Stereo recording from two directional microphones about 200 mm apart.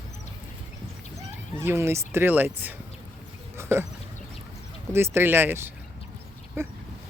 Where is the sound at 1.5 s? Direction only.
15° right (ahead or behind).